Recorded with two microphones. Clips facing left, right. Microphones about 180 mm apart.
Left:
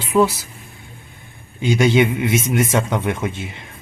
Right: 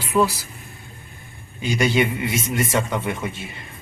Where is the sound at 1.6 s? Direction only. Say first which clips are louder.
Left 5 dB; 20° left (ahead or behind).